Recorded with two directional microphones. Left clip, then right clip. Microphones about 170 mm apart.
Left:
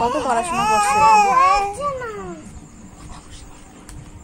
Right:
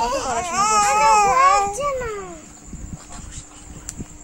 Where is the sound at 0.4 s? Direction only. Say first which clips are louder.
Right 2 dB; 15° right (ahead or behind).